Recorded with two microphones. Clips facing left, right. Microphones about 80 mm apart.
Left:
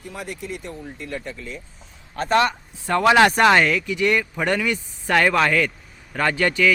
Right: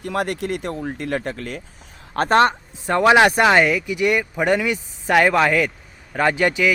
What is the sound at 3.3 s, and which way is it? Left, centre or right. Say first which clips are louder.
Speech: right 1 dB; centre.